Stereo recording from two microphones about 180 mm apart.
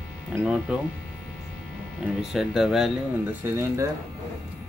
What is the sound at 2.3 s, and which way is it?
Speech, centre (ahead or behind).